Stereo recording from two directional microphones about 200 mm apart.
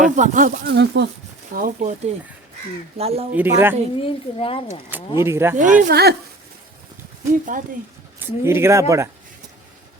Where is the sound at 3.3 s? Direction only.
10° right (ahead or behind).